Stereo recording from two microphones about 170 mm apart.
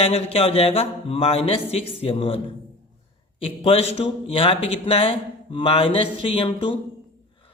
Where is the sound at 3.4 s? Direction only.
35° left (ahead or behind).